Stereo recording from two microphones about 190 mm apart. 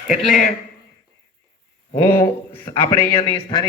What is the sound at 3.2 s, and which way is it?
Speech, 25° left (ahead or behind).